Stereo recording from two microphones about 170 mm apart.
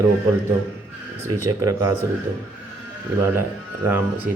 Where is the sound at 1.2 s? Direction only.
20° right (ahead or behind).